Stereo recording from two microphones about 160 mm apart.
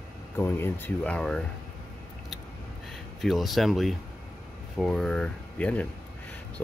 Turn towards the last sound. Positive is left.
turn(degrees=5)  # may be behind; listen again after turning